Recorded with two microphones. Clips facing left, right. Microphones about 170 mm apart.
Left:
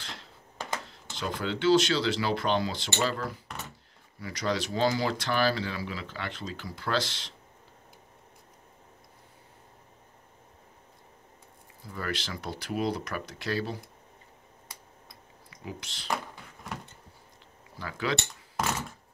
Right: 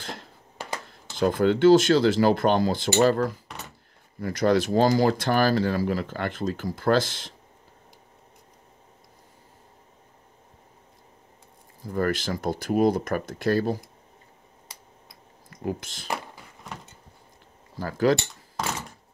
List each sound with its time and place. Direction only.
0.0 s a sound: 50° right (ahead or behind)
1.1 s speech: 50° right (ahead or behind)
11.8 s speech: 45° right (ahead or behind)
15.5 s speech: 50° right (ahead or behind)
17.7 s speech: 40° right (ahead or behind)